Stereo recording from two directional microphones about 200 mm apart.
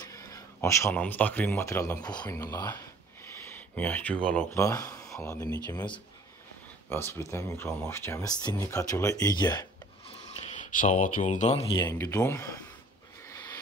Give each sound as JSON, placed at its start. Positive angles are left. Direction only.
{"t": 0.0, "sound": "speech", "side_deg": 15}
{"t": 10.4, "sound": "speech", "side_deg": 40}